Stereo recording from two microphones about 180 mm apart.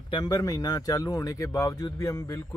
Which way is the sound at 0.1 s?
20° left (ahead or behind).